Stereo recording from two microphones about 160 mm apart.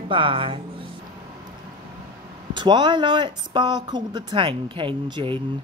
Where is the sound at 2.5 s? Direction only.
30° right (ahead or behind).